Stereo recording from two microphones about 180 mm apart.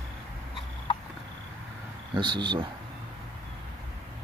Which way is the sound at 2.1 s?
25° right (ahead or behind).